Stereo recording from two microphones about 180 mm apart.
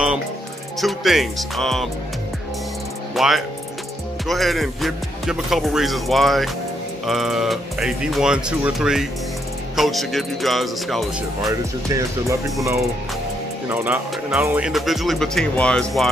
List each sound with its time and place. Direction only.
0.7 s speech: centre (ahead or behind)
3.2 s speech: centre (ahead or behind)
11.9 s speech: 20° right (ahead or behind)
13.7 s speech: 10° right (ahead or behind)